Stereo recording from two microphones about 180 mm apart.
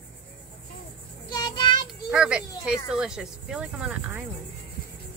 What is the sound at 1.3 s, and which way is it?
Child singing, 25° left (ahead or behind).